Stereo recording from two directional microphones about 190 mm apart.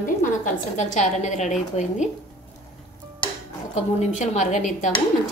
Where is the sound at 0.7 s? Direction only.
40° left (ahead or behind).